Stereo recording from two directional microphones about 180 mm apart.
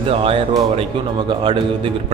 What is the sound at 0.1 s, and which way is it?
A man's voice, 30° right (ahead or behind).